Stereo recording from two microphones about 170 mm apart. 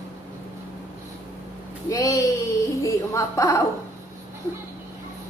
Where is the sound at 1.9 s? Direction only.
20° left (ahead or behind).